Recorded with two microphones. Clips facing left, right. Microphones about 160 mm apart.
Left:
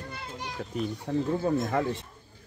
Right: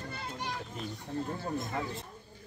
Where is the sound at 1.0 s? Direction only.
85° left.